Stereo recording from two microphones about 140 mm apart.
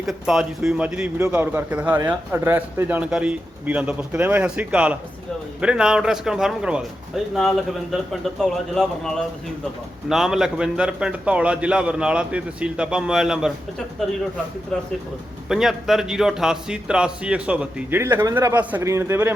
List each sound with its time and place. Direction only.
0.0 s a man's voice: centre (ahead or behind)
15.4 s a man's voice: 5° right (ahead or behind)
18.0 s a man's voice: 20° right (ahead or behind)